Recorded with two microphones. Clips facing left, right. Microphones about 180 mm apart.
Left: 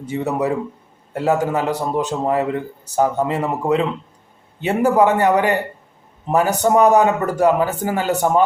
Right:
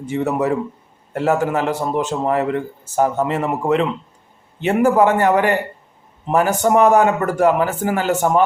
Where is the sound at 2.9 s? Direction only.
20° left (ahead or behind).